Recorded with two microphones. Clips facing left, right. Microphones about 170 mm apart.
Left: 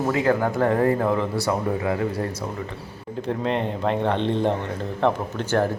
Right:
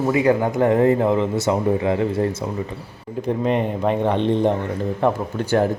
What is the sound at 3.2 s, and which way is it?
A man's voice, 15° right (ahead or behind).